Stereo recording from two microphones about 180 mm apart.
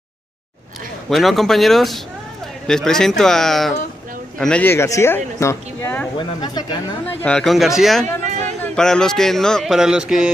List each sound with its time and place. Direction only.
1.1 s speech: centre (ahead or behind)
6.1 s speech: 25° left (ahead or behind)
7.1 s speech: 5° left (ahead or behind)